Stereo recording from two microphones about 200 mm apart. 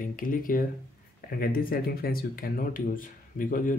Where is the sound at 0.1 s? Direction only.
45° left (ahead or behind).